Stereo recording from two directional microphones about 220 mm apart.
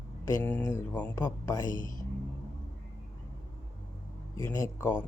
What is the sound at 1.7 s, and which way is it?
Speech, 40° left (ahead or behind).